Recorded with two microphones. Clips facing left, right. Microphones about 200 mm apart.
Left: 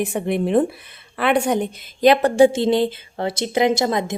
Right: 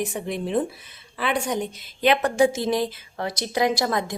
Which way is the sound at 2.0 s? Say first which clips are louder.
Left 6 dB; 35° left (ahead or behind).